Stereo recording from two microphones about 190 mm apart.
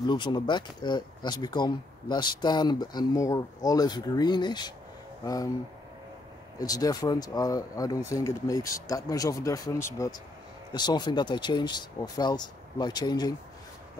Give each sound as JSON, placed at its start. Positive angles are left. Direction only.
{"t": 0.0, "sound": "speech", "side_deg": 25}
{"t": 6.6, "sound": "speech", "side_deg": 20}